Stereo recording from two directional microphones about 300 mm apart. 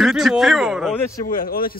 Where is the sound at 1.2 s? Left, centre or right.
Left.